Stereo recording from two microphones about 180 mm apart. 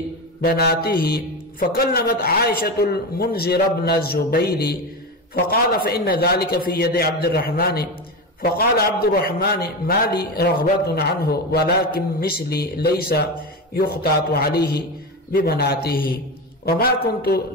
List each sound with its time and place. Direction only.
0.4 s a man's voice: 60° left (ahead or behind)